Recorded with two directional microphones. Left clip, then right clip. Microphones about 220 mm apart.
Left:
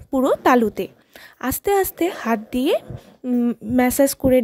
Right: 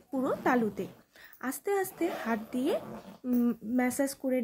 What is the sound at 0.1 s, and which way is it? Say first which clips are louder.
Speech: left 13 dB; 45° left (ahead or behind).